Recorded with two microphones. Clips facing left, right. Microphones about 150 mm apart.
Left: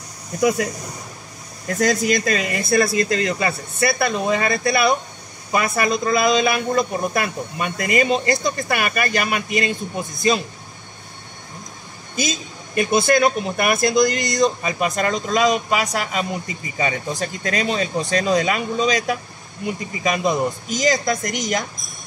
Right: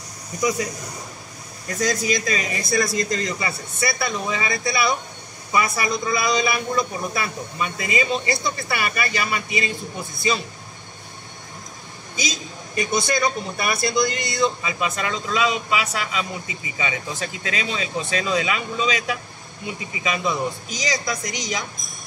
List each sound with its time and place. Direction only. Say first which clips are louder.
0.4 s speech: left 4 dB; 65° left (ahead or behind)
1.8 s speech: left 4 dB; 60° left (ahead or behind)
12.2 s speech: left 4 dB; 55° left (ahead or behind)